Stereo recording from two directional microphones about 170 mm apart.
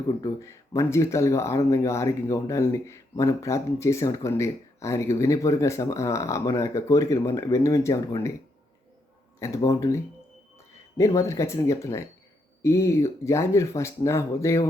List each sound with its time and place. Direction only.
0.2 s speech: 15° left (ahead or behind)
9.6 s speech: 20° left (ahead or behind)